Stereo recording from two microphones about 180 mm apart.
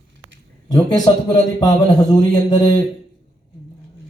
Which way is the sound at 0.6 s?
20° left (ahead or behind).